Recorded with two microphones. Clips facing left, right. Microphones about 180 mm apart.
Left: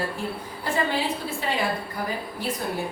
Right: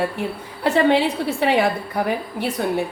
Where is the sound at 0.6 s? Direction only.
70° right (ahead or behind).